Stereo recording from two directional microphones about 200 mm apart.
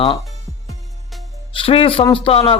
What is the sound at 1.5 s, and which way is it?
Speech, 30° left (ahead or behind).